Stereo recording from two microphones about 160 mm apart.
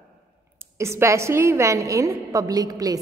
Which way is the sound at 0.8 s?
15° right (ahead or behind).